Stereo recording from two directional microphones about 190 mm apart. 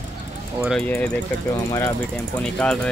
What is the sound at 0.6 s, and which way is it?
Speech, centre (ahead or behind).